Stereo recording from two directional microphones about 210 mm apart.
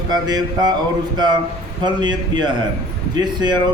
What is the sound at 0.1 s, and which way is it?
Speech, 20° right (ahead or behind).